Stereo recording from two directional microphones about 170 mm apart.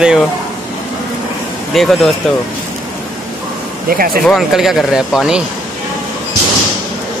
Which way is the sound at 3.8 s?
60° right (ahead or behind).